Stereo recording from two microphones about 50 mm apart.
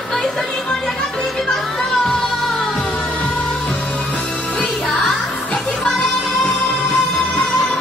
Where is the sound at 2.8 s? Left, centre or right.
Left.